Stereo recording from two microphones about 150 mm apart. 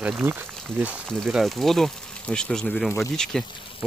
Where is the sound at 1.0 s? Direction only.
Centre (ahead or behind).